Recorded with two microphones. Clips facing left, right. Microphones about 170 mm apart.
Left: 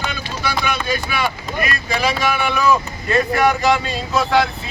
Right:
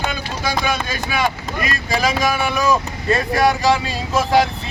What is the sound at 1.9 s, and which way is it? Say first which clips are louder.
Speech: right 2 dB; 40° right (ahead or behind).